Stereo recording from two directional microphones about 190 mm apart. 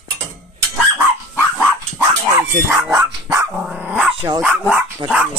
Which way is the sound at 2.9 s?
15° right (ahead or behind).